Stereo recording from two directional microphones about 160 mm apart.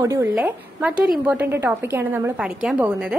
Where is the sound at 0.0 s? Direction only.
20° right (ahead or behind).